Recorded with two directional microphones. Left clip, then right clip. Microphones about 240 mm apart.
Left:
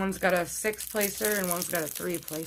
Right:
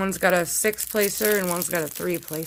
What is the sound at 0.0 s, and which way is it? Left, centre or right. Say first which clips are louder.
Speech: right 5 dB; right.